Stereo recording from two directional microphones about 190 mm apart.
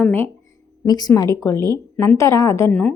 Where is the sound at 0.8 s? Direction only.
20° left (ahead or behind).